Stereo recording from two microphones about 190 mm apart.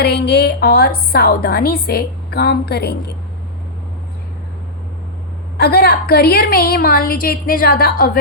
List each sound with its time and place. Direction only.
0.0 s a woman's voice: 55° left (ahead or behind)
5.5 s a woman's voice: 55° left (ahead or behind)